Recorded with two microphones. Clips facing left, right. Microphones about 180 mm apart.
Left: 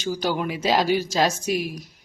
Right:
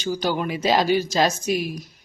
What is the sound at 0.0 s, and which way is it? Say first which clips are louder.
A woman's voice: right 1 dB; 10° left (ahead or behind).